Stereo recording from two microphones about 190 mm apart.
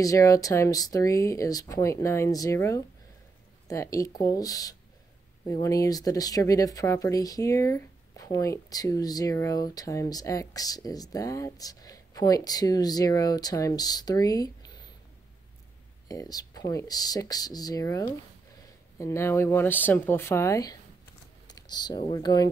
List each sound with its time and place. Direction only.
0.0 s speech: 15° left (ahead or behind)
16.1 s speech: 20° left (ahead or behind)